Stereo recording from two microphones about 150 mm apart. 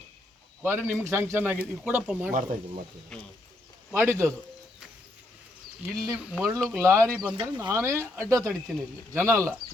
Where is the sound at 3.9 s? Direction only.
15° right (ahead or behind).